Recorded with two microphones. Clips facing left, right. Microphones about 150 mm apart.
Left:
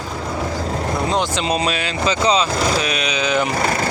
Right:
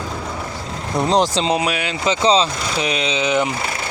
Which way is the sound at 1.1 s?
35° right (ahead or behind).